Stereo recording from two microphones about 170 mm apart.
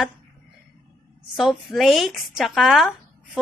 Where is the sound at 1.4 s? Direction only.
Centre (ahead or behind).